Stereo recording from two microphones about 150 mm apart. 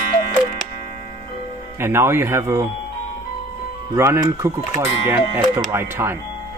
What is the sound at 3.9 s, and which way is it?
Speech, 15° right (ahead or behind).